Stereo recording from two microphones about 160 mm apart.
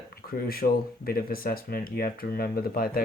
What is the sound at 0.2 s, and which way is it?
Speech, 70° left (ahead or behind).